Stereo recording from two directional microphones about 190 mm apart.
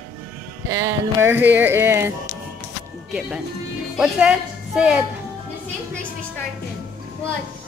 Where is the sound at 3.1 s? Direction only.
5° right (ahead or behind).